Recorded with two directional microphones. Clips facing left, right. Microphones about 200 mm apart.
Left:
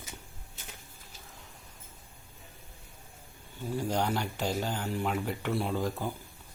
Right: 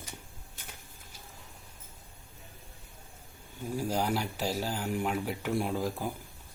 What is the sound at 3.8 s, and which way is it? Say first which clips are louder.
Speech: even; 5° right (ahead or behind).